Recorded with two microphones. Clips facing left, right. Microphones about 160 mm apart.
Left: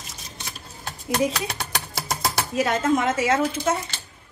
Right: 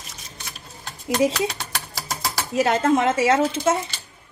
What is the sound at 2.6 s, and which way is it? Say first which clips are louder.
Speech: right 3 dB; 30° right (ahead or behind).